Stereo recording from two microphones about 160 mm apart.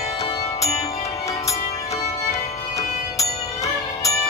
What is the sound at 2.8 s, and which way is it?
Music, 20° left (ahead or behind).